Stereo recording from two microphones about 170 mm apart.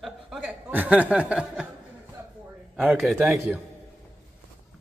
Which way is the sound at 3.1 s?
15° right (ahead or behind).